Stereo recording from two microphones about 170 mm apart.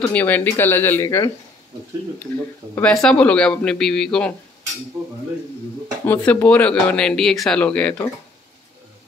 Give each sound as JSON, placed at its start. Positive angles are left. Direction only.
{"t": 0.0, "sound": "speech", "side_deg": 10}
{"t": 2.7, "sound": "speech", "side_deg": 5}
{"t": 5.0, "sound": "speech", "side_deg": -15}
{"t": 6.0, "sound": "speech", "side_deg": 10}